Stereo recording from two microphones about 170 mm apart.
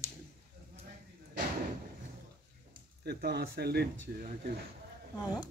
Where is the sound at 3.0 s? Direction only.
70° right (ahead or behind).